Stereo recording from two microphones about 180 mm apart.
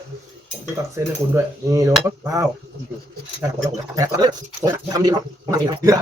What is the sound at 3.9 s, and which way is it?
Speech, 20° right (ahead or behind).